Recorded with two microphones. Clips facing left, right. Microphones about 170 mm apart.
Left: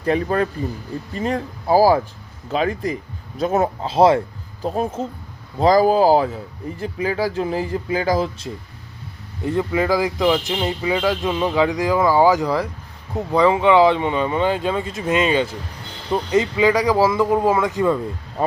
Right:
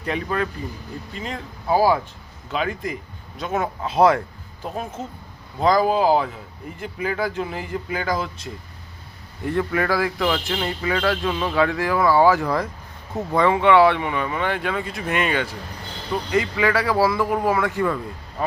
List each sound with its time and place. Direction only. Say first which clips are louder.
0.0 s speech: left 6 dB; 35° left (ahead or behind)
9.4 s a man's voice: left 2 dB; 20° left (ahead or behind)